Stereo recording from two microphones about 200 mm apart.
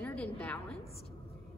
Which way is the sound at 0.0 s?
5° left (ahead or behind).